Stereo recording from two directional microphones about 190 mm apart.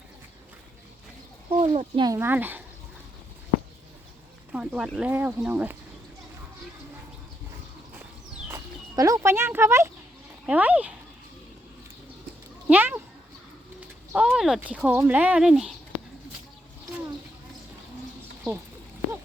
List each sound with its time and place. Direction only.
1.5 s speech: 35° right (ahead or behind)
2.0 s speech: 10° right (ahead or behind)
4.5 s speech: 5° right (ahead or behind)
8.4 s speech: 15° right (ahead or behind)
12.6 s speech: 10° right (ahead or behind)
14.1 s speech: 5° right (ahead or behind)